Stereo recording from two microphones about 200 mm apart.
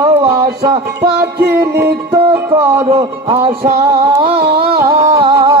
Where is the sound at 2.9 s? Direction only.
25° right (ahead or behind).